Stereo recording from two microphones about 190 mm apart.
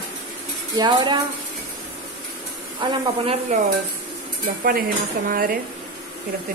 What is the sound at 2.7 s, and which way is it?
Speech, 30° right (ahead or behind).